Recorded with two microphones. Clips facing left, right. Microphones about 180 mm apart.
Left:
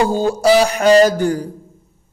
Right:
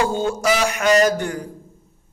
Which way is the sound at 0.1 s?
35° left (ahead or behind).